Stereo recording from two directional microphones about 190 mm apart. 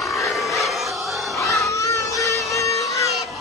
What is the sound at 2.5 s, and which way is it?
Music, 15° left (ahead or behind).